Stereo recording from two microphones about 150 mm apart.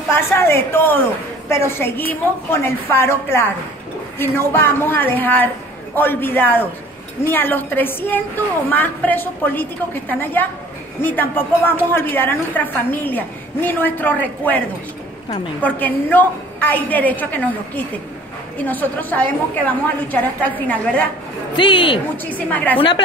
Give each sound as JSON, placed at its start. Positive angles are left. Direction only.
{"t": 0.1, "sound": "a woman's voice", "side_deg": 15}
{"t": 15.6, "sound": "a woman's voice", "side_deg": 10}
{"t": 21.5, "sound": "speech", "side_deg": 35}
{"t": 22.1, "sound": "a woman's voice", "side_deg": 10}